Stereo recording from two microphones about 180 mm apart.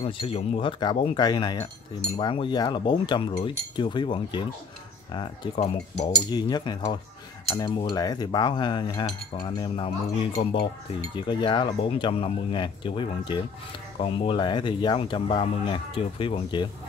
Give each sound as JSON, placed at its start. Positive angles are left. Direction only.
{"t": 0.0, "sound": "speech", "side_deg": 30}
{"t": 11.1, "sound": "speech", "side_deg": 25}